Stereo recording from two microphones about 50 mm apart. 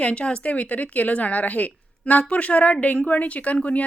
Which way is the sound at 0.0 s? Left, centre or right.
Left.